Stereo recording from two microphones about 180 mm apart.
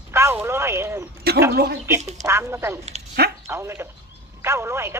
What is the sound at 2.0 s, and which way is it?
Speech, 40° right (ahead or behind).